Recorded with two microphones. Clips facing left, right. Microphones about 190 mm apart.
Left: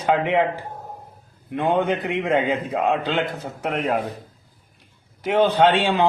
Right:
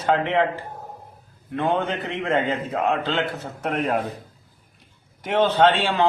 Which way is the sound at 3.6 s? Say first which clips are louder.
Even; centre (ahead or behind).